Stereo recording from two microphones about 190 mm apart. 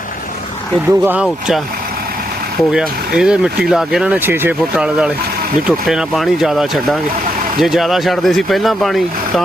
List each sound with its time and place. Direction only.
0.9 s speech: 10° right (ahead or behind)
2.7 s speech: 5° right (ahead or behind)